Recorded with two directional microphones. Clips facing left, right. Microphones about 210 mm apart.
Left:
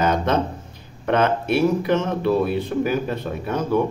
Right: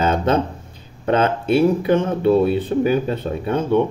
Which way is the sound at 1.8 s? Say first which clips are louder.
Right 3 dB; 30° right (ahead or behind).